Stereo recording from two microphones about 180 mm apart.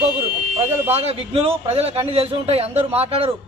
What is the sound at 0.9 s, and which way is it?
Speech, 35° right (ahead or behind).